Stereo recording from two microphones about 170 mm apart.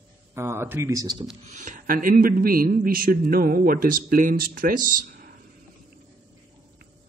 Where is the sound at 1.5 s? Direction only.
50° right (ahead or behind).